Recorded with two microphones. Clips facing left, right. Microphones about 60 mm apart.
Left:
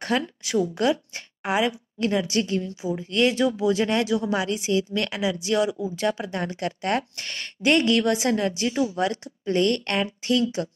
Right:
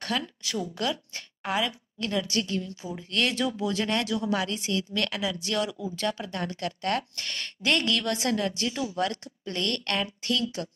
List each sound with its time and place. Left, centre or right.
0.4 s a woman's voice: left